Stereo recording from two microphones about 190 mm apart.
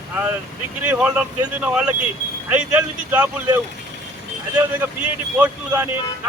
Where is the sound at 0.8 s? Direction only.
5° right (ahead or behind).